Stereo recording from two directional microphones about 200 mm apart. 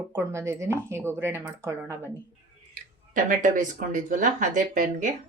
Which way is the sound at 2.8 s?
40° right (ahead or behind).